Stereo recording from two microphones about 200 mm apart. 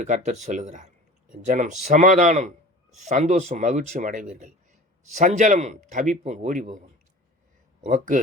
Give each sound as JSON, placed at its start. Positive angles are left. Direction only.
{"t": 0.0, "sound": "speech", "side_deg": -35}
{"t": 7.9, "sound": "speech", "side_deg": -40}